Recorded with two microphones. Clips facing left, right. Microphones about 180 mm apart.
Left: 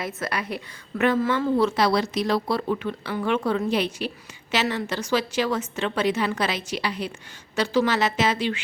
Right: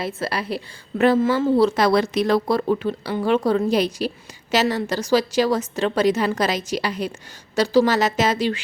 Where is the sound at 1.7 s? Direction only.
50° right (ahead or behind).